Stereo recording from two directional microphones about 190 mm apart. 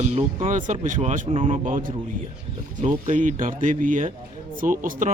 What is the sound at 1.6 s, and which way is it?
Speech, 45° right (ahead or behind).